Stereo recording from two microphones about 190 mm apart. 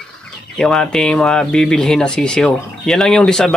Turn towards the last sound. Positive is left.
turn(degrees=5)  # may be behind; listen again after turning